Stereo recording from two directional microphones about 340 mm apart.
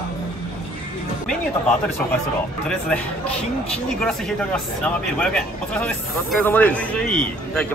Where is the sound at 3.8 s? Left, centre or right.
Centre.